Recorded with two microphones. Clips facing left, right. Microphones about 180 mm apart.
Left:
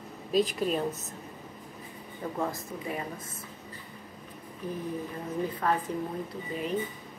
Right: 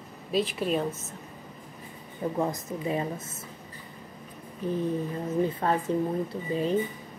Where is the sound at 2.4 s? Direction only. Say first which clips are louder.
Right 3 dB; 20° right (ahead or behind).